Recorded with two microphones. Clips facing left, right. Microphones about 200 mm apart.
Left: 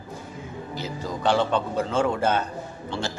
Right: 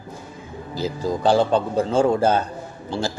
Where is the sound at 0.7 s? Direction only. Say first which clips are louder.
Right 8 dB; 35° right (ahead or behind).